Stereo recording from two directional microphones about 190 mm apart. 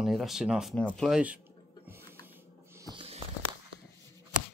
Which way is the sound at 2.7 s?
20° right (ahead or behind).